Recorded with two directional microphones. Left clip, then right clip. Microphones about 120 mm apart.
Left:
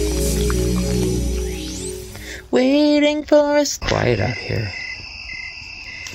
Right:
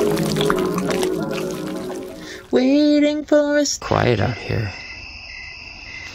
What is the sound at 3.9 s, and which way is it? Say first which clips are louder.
Speech: even; 20° right (ahead or behind).